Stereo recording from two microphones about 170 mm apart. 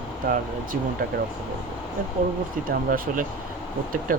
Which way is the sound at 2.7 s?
55° right (ahead or behind).